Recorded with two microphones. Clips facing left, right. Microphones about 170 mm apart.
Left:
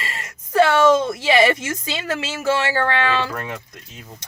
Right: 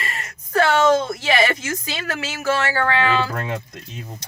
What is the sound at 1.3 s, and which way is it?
Speech, 25° left (ahead or behind).